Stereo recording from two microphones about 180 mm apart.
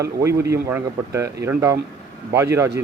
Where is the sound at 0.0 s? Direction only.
15° right (ahead or behind).